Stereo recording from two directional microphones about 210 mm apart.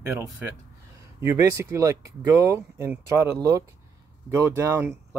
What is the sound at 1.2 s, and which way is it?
Speech, 15° right (ahead or behind).